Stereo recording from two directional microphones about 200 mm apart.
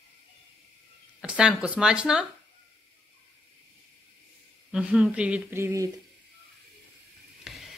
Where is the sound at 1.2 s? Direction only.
5° right (ahead or behind).